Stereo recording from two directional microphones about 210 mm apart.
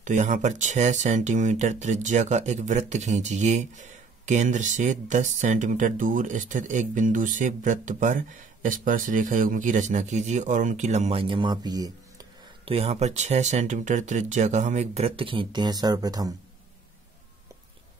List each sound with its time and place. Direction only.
0.0 s speech: 35° right (ahead or behind); by 16.3 s 15° right (ahead or behind)